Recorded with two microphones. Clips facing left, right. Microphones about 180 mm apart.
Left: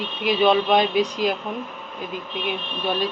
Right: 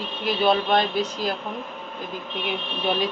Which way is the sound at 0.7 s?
15° left (ahead or behind).